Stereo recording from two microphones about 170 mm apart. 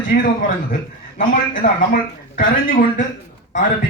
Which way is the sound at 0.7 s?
50° left (ahead or behind).